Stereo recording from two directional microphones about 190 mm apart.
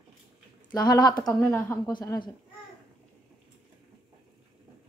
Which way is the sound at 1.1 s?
5° left (ahead or behind).